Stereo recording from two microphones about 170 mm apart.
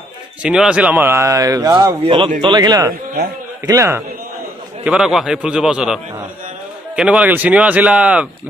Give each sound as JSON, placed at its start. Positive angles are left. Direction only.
{"t": 0.4, "sound": "speech", "side_deg": -5}
{"t": 4.8, "sound": "a man's voice", "side_deg": -5}
{"t": 7.0, "sound": "speech", "side_deg": -5}